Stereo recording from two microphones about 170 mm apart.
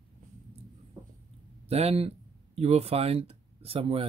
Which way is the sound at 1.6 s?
35° right (ahead or behind).